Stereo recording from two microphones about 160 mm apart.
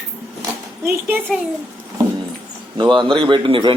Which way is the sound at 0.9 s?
15° right (ahead or behind).